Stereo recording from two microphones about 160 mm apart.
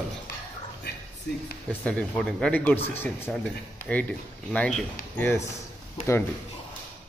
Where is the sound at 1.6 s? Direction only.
5° left (ahead or behind).